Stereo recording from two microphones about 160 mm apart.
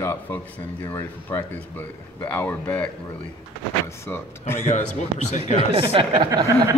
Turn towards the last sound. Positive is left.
turn(degrees=-20)  # may be behind; listen again after turning